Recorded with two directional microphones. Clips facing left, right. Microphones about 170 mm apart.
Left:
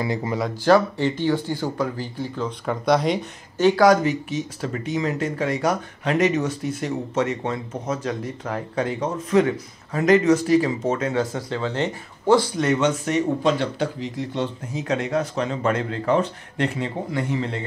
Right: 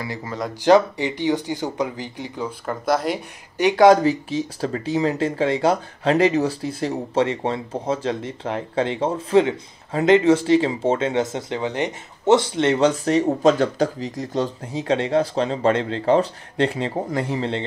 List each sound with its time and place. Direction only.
0.0 s speech: 20° left (ahead or behind)
0.7 s speech: 15° right (ahead or behind)
2.6 s speech: centre (ahead or behind)
3.5 s speech: 20° right (ahead or behind)